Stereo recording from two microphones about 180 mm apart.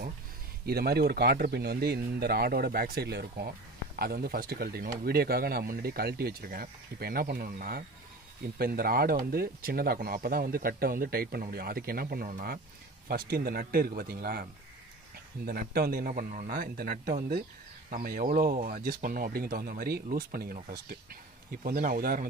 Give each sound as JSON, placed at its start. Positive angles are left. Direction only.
{"t": 0.7, "sound": "speech", "side_deg": -60}